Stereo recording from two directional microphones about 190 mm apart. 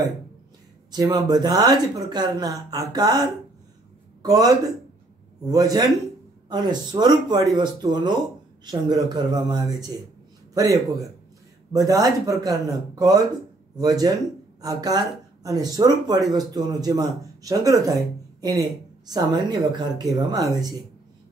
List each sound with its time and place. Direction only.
0.9 s a man's voice: 20° right (ahead or behind)